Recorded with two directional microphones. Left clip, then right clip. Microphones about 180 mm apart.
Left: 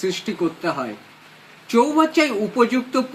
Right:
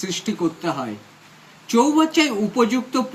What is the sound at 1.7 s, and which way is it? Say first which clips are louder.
Speech: even; 50° right (ahead or behind).